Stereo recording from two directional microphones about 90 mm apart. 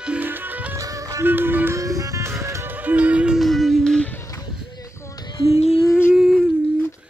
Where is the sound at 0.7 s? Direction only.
40° right (ahead or behind).